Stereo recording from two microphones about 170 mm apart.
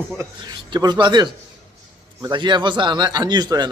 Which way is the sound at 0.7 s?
25° right (ahead or behind).